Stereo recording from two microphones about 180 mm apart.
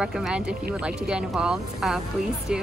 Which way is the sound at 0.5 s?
60° right (ahead or behind).